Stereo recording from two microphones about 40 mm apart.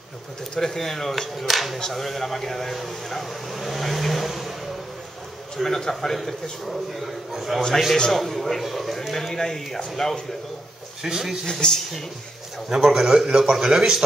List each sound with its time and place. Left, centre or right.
0.6 s a man's voice: centre
5.6 s speech: centre
6.7 s a man's voice: centre
11.0 s speech: centre
11.6 s speech: centre
12.6 s speech: centre